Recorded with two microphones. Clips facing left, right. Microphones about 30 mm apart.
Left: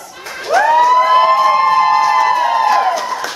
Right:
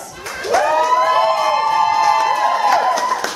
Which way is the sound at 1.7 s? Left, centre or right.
Left.